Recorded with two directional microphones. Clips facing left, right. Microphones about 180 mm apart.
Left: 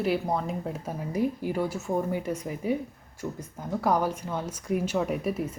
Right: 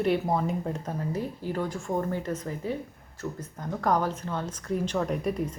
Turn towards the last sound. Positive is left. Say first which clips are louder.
# even
turn(degrees=5)  # may be behind; listen again after turning